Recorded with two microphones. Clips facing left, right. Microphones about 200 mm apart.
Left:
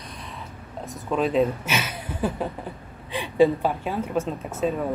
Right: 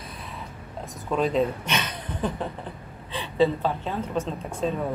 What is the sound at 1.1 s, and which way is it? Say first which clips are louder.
A woman's voice: left 2 dB; centre (ahead or behind).